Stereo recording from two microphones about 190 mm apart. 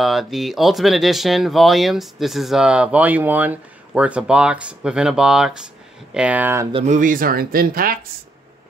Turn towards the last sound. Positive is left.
turn(degrees=-50)  # may be behind; listen again after turning